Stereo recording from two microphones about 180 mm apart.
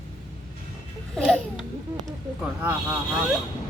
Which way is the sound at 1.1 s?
Centre (ahead or behind).